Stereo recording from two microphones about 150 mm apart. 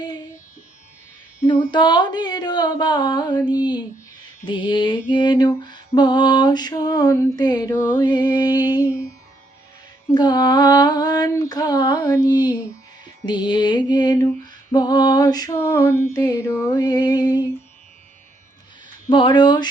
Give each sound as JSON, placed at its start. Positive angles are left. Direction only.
{"t": 1.7, "sound": "lullaby", "side_deg": 30}
{"t": 7.7, "sound": "music", "side_deg": 15}
{"t": 8.1, "sound": "lullaby", "side_deg": 25}
{"t": 10.2, "sound": "lullaby", "side_deg": 30}
{"t": 19.0, "sound": "speech", "side_deg": 30}